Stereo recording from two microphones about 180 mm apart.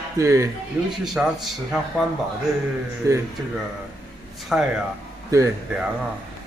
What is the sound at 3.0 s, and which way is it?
Speech, 20° right (ahead or behind).